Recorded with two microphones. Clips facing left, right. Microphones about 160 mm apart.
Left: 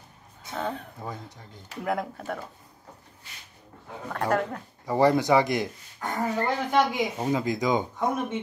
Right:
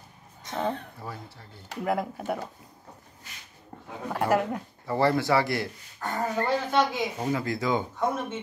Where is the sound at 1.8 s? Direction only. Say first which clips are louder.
Right 1 dB; 5° right (ahead or behind).